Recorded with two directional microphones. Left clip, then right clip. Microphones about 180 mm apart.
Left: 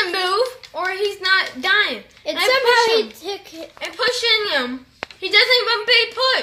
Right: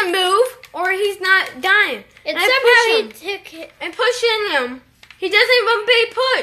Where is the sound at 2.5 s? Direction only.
10° left (ahead or behind).